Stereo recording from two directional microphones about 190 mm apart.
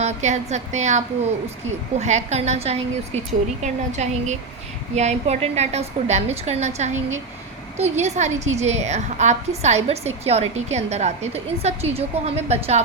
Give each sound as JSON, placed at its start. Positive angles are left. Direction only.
{"t": 0.0, "sound": "a woman's voice", "side_deg": -35}